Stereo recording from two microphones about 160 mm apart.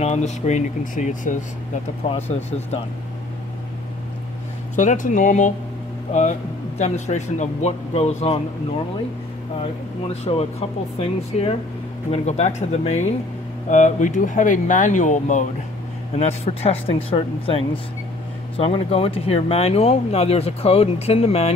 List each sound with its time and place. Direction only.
0.0 s speech: 45° left (ahead or behind)
2.0 s speech: 40° left (ahead or behind)
4.7 s speech: 55° left (ahead or behind)
6.8 s speech: 45° left (ahead or behind)
9.6 s speech: 40° left (ahead or behind)